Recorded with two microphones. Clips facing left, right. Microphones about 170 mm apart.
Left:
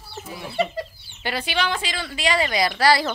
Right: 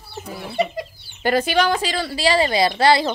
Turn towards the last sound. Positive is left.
turn(degrees=-25)  # may be behind; listen again after turning